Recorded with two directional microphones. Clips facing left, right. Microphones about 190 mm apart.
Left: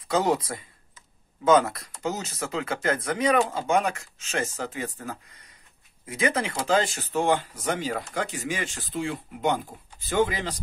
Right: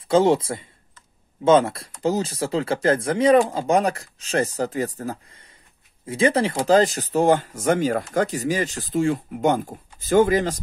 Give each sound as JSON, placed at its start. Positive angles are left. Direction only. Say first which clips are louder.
{"t": 0.1, "sound": "speech", "louder": "right 7 dB", "side_deg": -25}